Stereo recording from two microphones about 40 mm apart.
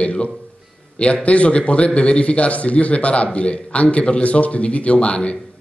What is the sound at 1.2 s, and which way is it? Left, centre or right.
Speech, left.